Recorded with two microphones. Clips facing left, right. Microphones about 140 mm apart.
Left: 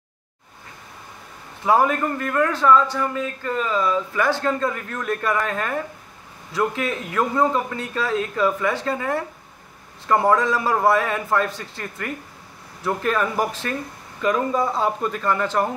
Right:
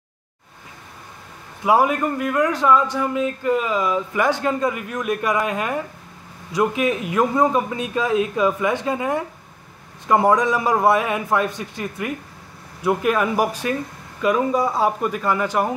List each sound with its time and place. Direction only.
1.6 s a man's voice: 10° right (ahead or behind)